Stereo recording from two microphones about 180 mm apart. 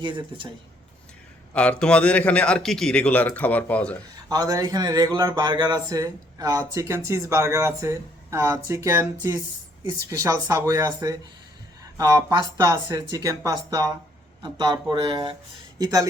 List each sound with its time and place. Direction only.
0.0 s speech: 25° right (ahead or behind)
1.5 s a man's voice: 5° left (ahead or behind)
4.3 s speech: 20° right (ahead or behind)
15.8 s speech: 20° right (ahead or behind)